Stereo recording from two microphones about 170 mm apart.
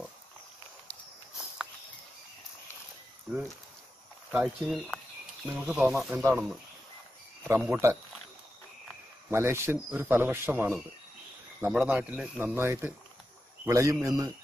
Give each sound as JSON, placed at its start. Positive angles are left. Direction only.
{"t": 4.3, "sound": "speech", "side_deg": -5}
{"t": 7.4, "sound": "speech", "side_deg": -10}
{"t": 9.3, "sound": "speech", "side_deg": -15}